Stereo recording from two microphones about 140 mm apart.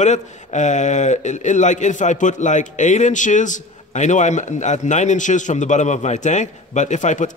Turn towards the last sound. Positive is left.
turn(degrees=60)  # may be behind; listen again after turning